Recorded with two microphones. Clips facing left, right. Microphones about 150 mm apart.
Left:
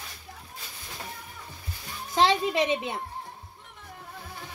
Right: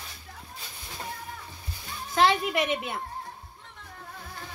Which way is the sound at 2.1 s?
25° left (ahead or behind).